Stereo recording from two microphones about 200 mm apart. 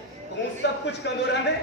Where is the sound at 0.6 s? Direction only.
60° left (ahead or behind).